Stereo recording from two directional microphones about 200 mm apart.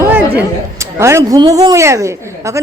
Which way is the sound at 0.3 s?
15° right (ahead or behind).